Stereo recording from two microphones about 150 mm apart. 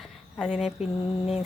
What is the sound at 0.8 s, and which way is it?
Mantra, 45° left (ahead or behind).